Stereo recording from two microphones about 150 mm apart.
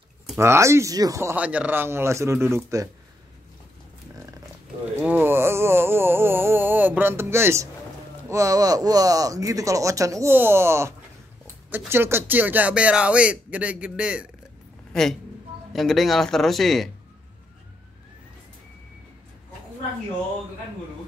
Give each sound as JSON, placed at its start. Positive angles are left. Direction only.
{"t": 0.4, "sound": "speech", "side_deg": -20}
{"t": 5.0, "sound": "a sound", "side_deg": -15}
{"t": 8.3, "sound": "a man's voice", "side_deg": -20}